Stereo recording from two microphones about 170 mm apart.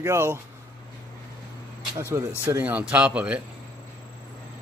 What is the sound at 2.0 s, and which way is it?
Speech, 15° right (ahead or behind).